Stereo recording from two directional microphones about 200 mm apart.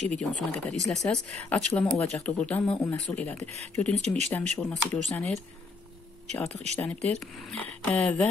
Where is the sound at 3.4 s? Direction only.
35° right (ahead or behind).